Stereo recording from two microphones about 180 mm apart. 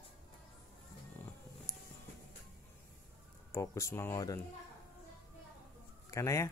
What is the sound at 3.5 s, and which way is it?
Speech, 15° left (ahead or behind).